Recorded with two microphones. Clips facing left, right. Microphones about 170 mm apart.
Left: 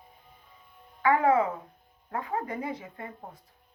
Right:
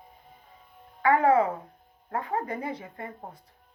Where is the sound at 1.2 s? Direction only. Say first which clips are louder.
Right 2 dB; 35° right (ahead or behind).